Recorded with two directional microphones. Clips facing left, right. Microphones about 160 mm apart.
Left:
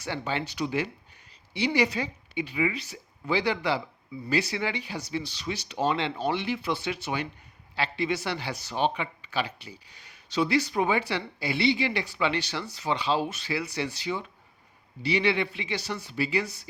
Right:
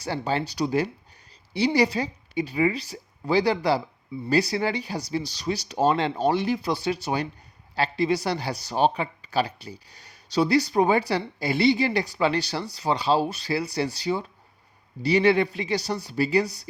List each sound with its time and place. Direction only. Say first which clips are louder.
0.0 s speech: right 4 dB; 35° right (ahead or behind)